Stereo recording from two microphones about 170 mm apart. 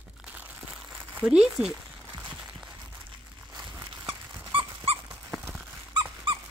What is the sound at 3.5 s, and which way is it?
Dog, 20° right (ahead or behind).